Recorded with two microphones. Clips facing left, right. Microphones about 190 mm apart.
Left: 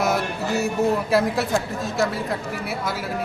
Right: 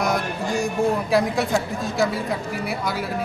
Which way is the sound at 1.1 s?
Centre (ahead or behind).